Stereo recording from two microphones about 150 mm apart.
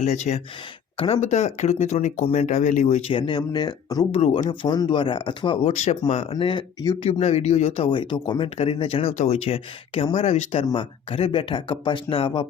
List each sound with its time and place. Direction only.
0.0 s speech: 50° left (ahead or behind)
6.3 s speech: 30° left (ahead or behind)
7.1 s speech: 45° left (ahead or behind)